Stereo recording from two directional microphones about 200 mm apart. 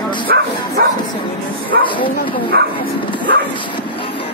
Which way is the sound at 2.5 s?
50° right (ahead or behind).